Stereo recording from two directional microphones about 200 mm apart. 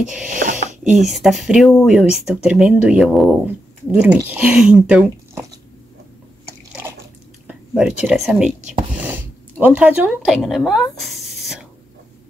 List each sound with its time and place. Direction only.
0.4 s speech: 40° right (ahead or behind)
1.0 s speech: centre (ahead or behind)
7.4 s speech: 5° right (ahead or behind)
9.0 s a sound: 10° right (ahead or behind)